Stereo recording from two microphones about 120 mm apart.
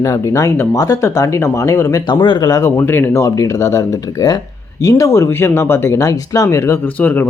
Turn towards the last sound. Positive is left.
turn(degrees=15)  # may be behind; listen again after turning